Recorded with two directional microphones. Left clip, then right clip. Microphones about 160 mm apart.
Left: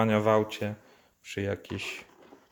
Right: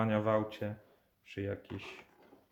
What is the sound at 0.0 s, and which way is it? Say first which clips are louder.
Speech: left 7 dB; 35° left (ahead or behind).